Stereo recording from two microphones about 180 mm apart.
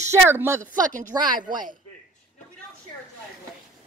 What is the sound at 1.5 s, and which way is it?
Speech, 50° right (ahead or behind).